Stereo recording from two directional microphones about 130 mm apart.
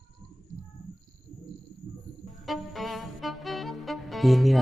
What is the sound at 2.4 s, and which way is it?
Music, centre (ahead or behind).